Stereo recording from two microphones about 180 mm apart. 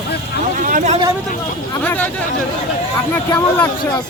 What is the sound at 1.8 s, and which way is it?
Speech, 10° left (ahead or behind).